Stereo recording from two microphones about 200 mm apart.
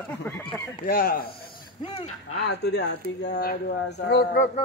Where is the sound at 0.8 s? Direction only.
45° left (ahead or behind).